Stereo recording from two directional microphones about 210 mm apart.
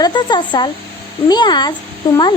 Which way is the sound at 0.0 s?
20° left (ahead or behind).